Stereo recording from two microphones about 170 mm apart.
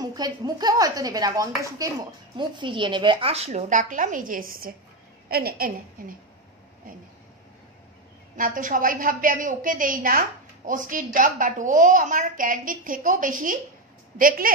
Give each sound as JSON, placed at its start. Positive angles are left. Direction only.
{"t": 0.0, "sound": "a woman's voice", "side_deg": -25}
{"t": 8.4, "sound": "a woman's voice", "side_deg": -55}